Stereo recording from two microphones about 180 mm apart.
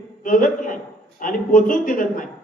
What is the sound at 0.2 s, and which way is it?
A man's voice, 50° left (ahead or behind).